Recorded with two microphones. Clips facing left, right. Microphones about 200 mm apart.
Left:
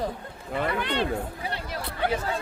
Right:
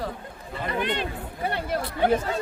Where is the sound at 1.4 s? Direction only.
55° right (ahead or behind).